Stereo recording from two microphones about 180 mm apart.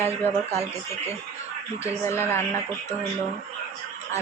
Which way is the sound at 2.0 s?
15° left (ahead or behind).